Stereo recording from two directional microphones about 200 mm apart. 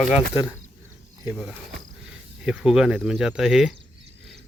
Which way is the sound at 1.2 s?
5° right (ahead or behind).